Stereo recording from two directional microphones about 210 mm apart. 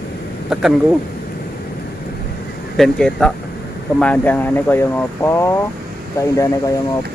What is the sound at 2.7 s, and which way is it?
Speech, 5° left (ahead or behind).